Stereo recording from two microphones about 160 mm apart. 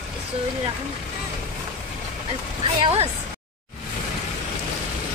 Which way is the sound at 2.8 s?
35° right (ahead or behind).